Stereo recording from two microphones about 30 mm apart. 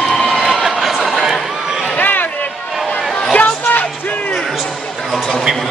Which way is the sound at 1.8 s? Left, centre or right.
Left.